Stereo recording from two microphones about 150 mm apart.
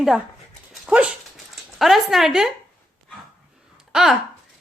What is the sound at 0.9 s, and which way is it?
Dog, 10° right (ahead or behind).